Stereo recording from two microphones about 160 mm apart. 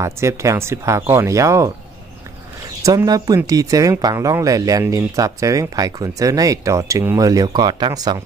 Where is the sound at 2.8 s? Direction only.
20° right (ahead or behind).